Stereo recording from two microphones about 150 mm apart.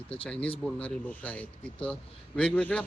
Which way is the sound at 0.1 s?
10° left (ahead or behind).